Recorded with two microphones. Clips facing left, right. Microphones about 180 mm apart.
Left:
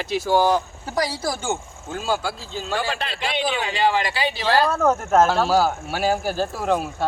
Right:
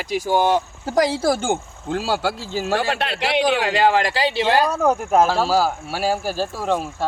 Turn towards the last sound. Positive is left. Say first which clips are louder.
# even
turn(degrees=0)  # may be behind; listen again after turning